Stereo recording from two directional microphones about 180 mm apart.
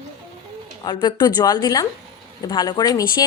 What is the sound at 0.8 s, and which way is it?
A woman's voice, 25° left (ahead or behind).